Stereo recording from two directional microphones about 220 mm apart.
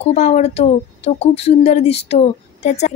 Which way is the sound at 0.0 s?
30° left (ahead or behind).